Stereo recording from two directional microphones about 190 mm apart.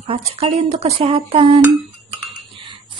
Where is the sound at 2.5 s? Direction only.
25° right (ahead or behind).